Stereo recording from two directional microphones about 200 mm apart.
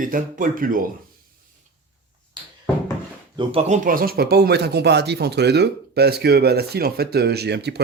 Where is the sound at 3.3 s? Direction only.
25° right (ahead or behind); by 7.7 s 55° right (ahead or behind).